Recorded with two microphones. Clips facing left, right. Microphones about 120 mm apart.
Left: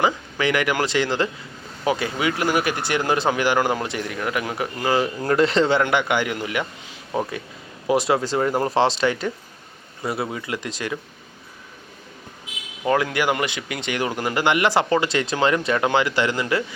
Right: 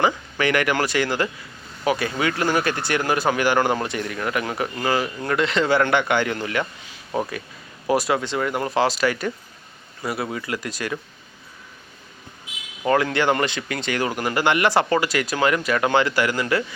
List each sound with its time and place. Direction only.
0.0 s speech: 15° left (ahead or behind)
5.0 s speech: 30° left (ahead or behind)
5.7 s speech: 15° left (ahead or behind)
8.2 s speech: 35° left (ahead or behind); by 10.9 s 20° left (ahead or behind)
12.8 s speech: 10° left (ahead or behind)